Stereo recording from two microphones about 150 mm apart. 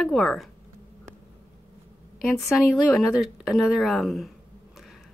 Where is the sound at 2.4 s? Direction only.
Centre (ahead or behind).